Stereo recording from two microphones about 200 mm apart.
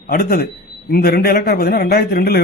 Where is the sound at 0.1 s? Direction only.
50° left (ahead or behind).